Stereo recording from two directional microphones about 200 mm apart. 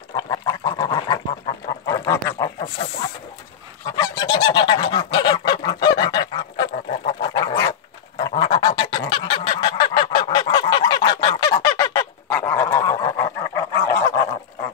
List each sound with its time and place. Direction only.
0.1 s duck: 20° left (ahead or behind)
3.9 s goose: 20° left (ahead or behind)
7.1 s dog: 20° left (ahead or behind)
8.4 s goose: 25° left (ahead or behind)